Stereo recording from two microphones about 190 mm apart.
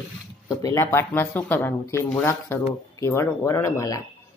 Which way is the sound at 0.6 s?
15° left (ahead or behind).